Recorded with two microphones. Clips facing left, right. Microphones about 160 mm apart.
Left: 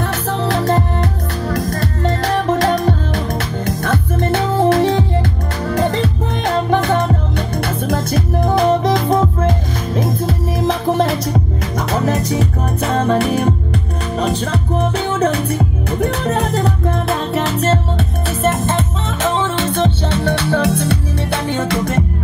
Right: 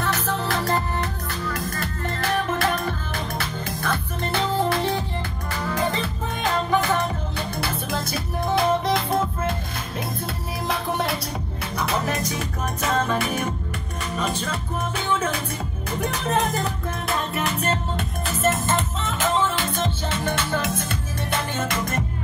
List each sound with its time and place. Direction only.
0.0 s music: 70° left (ahead or behind)
3.3 s music: 45° left (ahead or behind)
4.3 s music: 85° left
5.9 s music: 65° left (ahead or behind); by 11.4 s 45° left (ahead or behind)
12.1 s music: 70° left (ahead or behind)
12.8 s music: 35° left (ahead or behind)
15.3 s music: 70° left (ahead or behind)
17.4 s music: 85° left